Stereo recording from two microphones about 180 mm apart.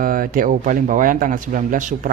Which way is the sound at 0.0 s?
50° right (ahead or behind).